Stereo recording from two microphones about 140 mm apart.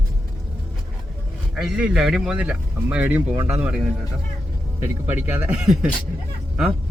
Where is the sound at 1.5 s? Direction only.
5° right (ahead or behind).